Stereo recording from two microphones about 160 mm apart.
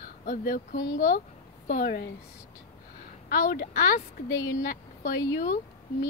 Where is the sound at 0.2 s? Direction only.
65° left (ahead or behind).